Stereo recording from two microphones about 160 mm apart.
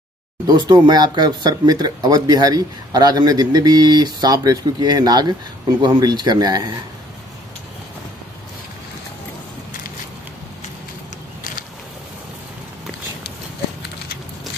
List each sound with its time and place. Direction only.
0.5 s speech: 25° right (ahead or behind)